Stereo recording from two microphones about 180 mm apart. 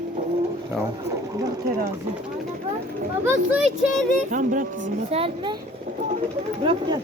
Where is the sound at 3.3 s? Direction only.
5° right (ahead or behind).